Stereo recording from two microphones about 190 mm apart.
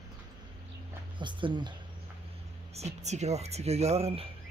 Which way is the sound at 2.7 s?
35° right (ahead or behind).